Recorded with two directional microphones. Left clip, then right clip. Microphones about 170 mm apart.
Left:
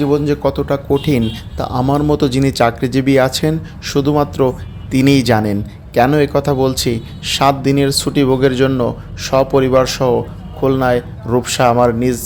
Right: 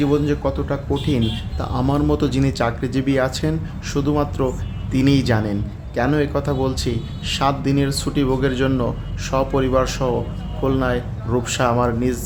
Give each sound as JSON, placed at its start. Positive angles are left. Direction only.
{"t": 0.0, "sound": "speech", "side_deg": 25}
{"t": 0.4, "sound": "speech", "side_deg": 40}